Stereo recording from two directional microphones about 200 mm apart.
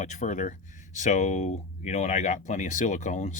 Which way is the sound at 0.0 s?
35° left (ahead or behind).